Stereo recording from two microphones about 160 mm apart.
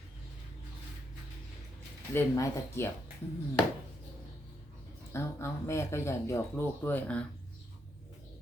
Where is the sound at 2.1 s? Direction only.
15° left (ahead or behind).